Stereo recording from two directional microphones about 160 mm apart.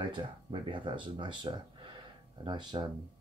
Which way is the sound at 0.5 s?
30° right (ahead or behind).